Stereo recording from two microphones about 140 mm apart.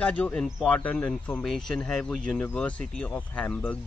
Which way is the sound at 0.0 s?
10° left (ahead or behind).